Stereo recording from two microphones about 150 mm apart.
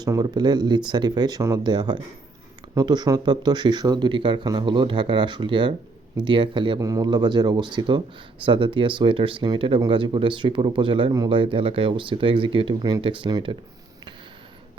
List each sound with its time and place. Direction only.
0.0 s speech: 25° right (ahead or behind)